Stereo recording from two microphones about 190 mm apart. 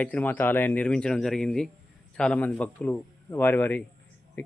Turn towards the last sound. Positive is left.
turn(degrees=10)  # may be behind; listen again after turning